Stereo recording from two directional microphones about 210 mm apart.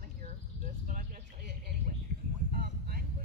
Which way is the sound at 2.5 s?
45° right (ahead or behind).